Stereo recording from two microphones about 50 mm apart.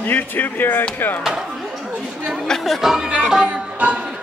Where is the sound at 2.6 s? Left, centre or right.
Centre.